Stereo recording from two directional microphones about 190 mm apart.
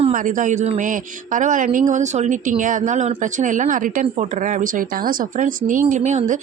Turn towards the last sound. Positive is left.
turn(degrees=-40)  # may be behind; listen again after turning